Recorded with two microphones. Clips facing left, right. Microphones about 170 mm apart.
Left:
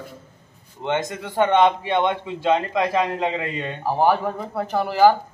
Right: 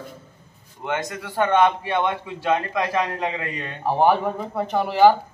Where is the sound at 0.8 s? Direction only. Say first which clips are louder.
Left 3 dB; 20° left (ahead or behind).